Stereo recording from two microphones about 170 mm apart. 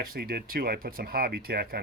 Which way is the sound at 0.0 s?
60° right (ahead or behind).